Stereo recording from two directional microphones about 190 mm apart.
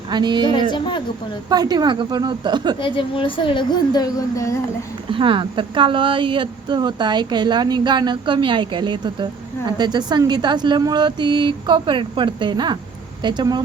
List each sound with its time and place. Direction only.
0.1 s speech: 25° right (ahead or behind)
0.7 s a woman's voice: 25° left (ahead or behind)
1.5 s speech: 20° right (ahead or behind)
2.8 s a woman's voice: 25° left (ahead or behind)
5.1 s speech: 25° right (ahead or behind)